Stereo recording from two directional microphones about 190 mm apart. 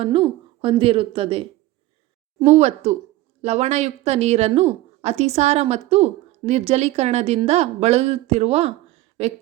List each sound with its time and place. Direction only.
0.0 s a woman's voice: 30° right (ahead or behind)